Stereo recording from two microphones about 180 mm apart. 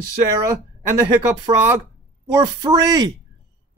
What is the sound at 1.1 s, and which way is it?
Speech, 15° right (ahead or behind).